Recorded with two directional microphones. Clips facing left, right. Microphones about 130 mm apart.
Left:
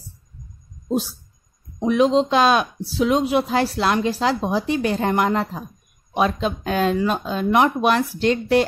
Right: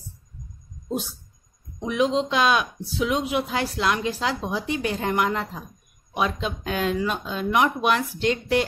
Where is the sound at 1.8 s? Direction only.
35° left (ahead or behind).